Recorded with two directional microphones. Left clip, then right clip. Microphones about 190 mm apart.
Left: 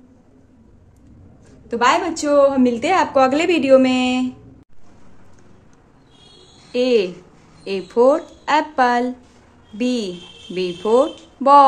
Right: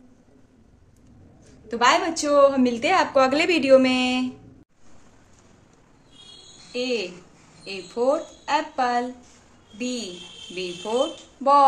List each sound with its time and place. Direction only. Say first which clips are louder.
1.7 s a woman's voice: left 3 dB; 10° left (ahead or behind)
6.7 s speech: left 10 dB; 45° left (ahead or behind)